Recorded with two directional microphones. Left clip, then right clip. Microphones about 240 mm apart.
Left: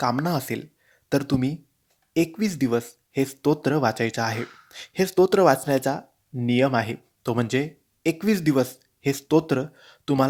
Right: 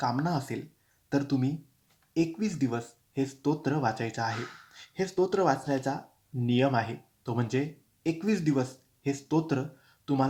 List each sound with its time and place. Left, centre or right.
0.0 s speech: left